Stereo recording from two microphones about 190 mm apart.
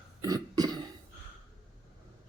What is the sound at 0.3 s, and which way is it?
Cough, 20° right (ahead or behind).